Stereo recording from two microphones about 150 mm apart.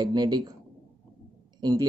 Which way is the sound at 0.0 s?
30° right (ahead or behind).